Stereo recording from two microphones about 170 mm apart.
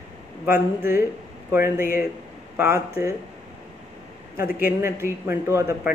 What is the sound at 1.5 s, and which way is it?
Speech, 15° right (ahead or behind).